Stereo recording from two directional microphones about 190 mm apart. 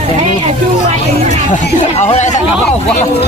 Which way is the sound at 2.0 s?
35° left (ahead or behind).